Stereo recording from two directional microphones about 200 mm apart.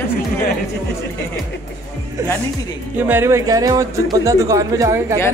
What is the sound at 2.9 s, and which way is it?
Music, 10° right (ahead or behind).